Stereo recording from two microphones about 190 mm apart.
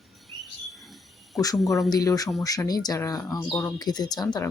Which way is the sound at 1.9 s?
20° left (ahead or behind).